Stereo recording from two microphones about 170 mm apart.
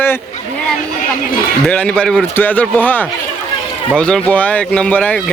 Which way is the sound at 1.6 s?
5° left (ahead or behind).